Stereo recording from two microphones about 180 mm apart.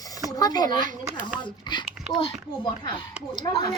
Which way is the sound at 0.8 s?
45° right (ahead or behind).